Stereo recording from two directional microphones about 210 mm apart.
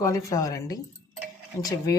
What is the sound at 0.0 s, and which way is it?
Speech, 15° left (ahead or behind).